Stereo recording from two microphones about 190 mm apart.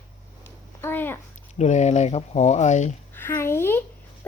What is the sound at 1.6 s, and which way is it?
Speech, 35° left (ahead or behind).